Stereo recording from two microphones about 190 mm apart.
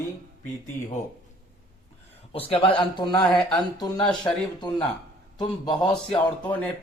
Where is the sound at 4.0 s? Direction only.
5° left (ahead or behind).